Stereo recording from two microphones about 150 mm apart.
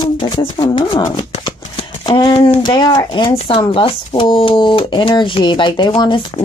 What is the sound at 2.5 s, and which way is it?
A woman's voice, 30° left (ahead or behind).